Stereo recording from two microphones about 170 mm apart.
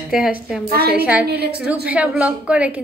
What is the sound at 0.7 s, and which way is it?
Speech, 65° right (ahead or behind).